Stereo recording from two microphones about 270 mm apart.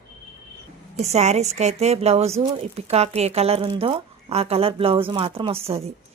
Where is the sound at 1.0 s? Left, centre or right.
Right.